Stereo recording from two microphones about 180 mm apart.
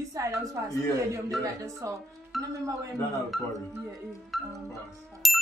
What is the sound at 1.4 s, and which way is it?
Speech, 15° right (ahead or behind).